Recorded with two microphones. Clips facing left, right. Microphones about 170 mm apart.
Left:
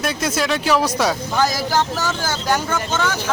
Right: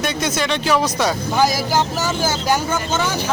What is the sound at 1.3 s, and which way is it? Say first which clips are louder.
Speech: right 3 dB; 15° right (ahead or behind).